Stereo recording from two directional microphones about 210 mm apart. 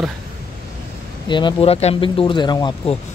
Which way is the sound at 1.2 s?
20° left (ahead or behind).